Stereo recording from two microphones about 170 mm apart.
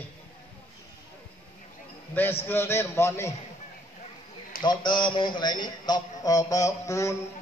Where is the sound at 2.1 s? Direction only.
10° left (ahead or behind).